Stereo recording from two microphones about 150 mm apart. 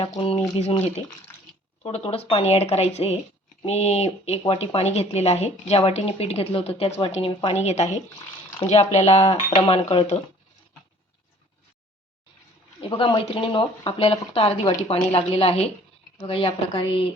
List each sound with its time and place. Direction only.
0.0 s speech: 40° left (ahead or behind)
12.9 s speech: 35° left (ahead or behind)